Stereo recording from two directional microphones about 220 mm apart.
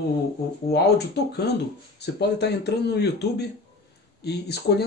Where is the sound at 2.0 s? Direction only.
50° left (ahead or behind).